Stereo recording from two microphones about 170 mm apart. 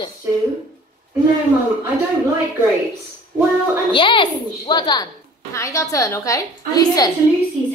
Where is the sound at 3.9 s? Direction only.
30° left (ahead or behind).